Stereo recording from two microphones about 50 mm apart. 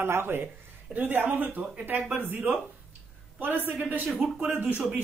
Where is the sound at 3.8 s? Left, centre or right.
Right.